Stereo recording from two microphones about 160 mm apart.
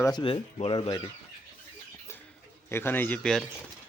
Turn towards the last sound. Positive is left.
turn(degrees=5)  # may be behind; listen again after turning